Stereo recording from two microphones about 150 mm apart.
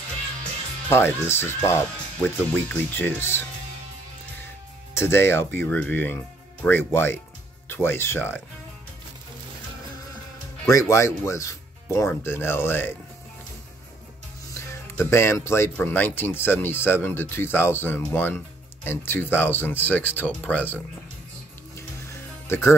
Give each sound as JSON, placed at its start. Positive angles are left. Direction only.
{"t": 0.8, "sound": "speech", "side_deg": 15}
{"t": 4.9, "sound": "speech", "side_deg": 15}
{"t": 10.7, "sound": "speech", "side_deg": 20}
{"t": 14.5, "sound": "speech", "side_deg": 15}
{"t": 21.7, "sound": "music", "side_deg": 20}